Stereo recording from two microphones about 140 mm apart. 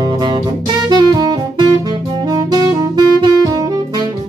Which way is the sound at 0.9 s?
30° right (ahead or behind).